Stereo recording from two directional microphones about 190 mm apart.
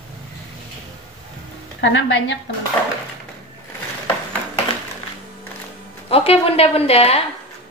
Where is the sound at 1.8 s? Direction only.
70° left (ahead or behind).